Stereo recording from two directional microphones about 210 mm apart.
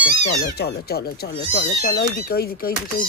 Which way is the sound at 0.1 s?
50° left (ahead or behind).